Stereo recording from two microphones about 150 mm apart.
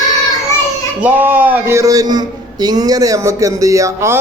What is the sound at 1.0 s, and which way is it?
Speech, 10° right (ahead or behind).